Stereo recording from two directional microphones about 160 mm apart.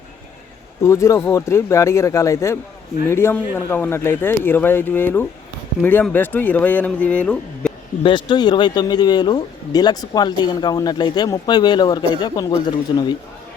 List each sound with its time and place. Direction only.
0.8 s a man's voice: 20° left (ahead or behind)
8.0 s a man's voice: 30° left (ahead or behind)